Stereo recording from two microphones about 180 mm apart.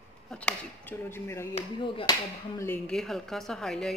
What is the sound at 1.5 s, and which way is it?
Speech, 30° left (ahead or behind).